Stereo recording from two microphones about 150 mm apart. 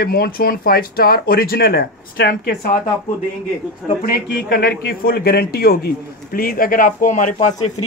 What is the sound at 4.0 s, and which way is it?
A man's voice, 80° left.